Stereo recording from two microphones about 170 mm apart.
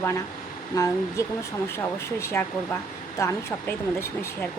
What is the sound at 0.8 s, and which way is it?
Speech, 20° left (ahead or behind).